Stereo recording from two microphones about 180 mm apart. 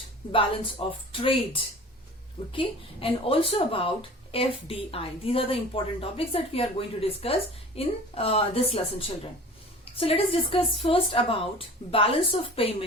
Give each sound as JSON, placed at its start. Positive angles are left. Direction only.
{"t": 0.3, "sound": "speech", "side_deg": 30}